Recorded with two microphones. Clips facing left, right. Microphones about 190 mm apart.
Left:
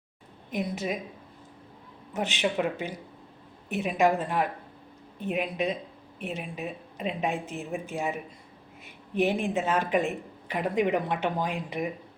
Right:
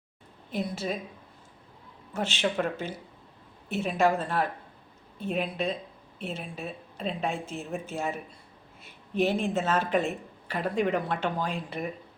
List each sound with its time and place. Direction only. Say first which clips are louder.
0.5 s speech: left 1 dB; 15° left (ahead or behind)
2.1 s speech: left 1 dB; 15° left (ahead or behind)